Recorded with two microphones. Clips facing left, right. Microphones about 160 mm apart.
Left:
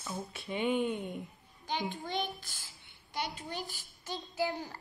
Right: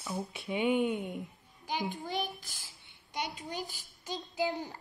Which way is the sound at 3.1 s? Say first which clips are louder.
Even; 15° right (ahead or behind).